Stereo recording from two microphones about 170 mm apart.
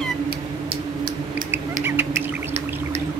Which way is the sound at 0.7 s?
60° right (ahead or behind).